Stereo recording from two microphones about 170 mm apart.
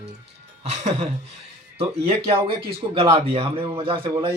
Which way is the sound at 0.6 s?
40° right (ahead or behind).